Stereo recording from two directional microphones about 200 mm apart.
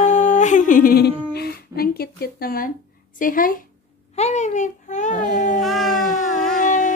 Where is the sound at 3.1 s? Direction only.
45° left (ahead or behind).